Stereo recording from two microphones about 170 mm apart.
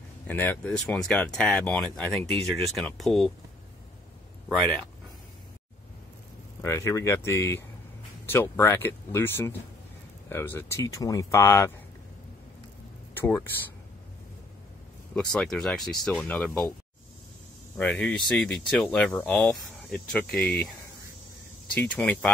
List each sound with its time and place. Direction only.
0.3 s speech: 10° left (ahead or behind)
4.5 s speech: centre (ahead or behind)
6.6 s speech: 15° left (ahead or behind)
13.1 s speech: 10° left (ahead or behind)
15.1 s speech: 5° left (ahead or behind)
17.7 s speech: 5° left (ahead or behind)
21.7 s speech: 5° left (ahead or behind)